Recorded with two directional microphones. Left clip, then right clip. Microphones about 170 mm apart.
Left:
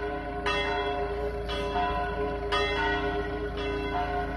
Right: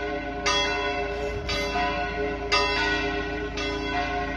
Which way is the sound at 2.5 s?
20° right (ahead or behind).